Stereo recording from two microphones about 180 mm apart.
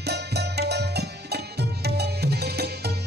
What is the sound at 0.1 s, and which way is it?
Music, 65° right (ahead or behind).